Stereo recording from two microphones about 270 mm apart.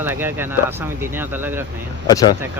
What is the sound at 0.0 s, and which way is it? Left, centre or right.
Speech, centre.